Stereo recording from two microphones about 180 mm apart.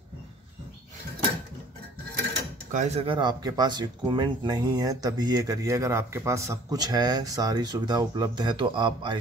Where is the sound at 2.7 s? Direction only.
40° right (ahead or behind).